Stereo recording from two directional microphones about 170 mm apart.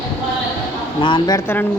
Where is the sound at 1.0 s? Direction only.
25° left (ahead or behind).